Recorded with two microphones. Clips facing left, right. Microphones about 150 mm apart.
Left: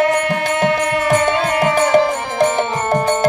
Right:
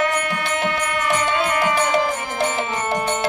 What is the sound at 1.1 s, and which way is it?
Music, 40° left (ahead or behind).